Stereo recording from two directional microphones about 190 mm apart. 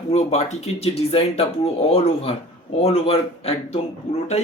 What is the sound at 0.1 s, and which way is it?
Speech, 35° left (ahead or behind).